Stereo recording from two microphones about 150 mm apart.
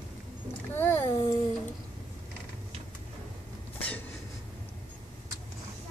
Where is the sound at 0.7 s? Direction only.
15° left (ahead or behind).